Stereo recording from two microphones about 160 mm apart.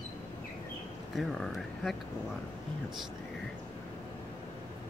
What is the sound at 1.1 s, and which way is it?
Speech, centre (ahead or behind).